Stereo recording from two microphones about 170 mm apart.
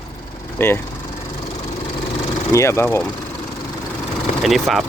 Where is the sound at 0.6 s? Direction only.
15° left (ahead or behind).